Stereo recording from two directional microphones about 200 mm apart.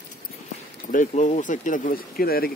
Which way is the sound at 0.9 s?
40° left (ahead or behind).